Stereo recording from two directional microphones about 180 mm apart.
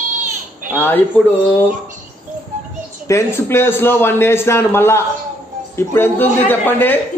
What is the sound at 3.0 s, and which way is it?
A man's voice, 15° left (ahead or behind).